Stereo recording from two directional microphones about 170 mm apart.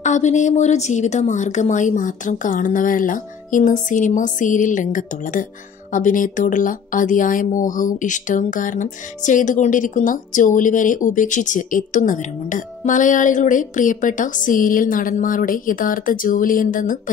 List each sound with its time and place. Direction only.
0.0 s a woman's voice: 45° left (ahead or behind)